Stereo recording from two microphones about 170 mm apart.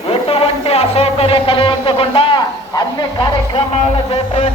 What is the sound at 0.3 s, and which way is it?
Music, 35° left (ahead or behind).